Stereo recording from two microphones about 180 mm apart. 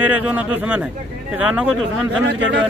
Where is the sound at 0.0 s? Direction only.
10° right (ahead or behind).